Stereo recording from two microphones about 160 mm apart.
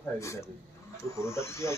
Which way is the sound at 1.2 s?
15° left (ahead or behind).